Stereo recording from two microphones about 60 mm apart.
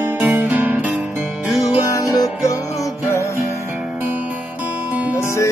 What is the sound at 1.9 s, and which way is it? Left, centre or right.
Music, left.